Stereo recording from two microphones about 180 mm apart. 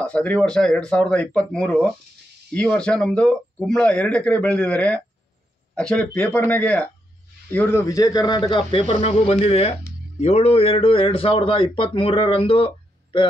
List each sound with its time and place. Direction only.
0.0 s a man's voice: 5° left (ahead or behind); by 13.3 s 30° left (ahead or behind)